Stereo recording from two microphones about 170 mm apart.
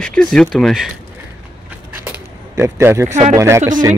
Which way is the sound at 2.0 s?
15° right (ahead or behind).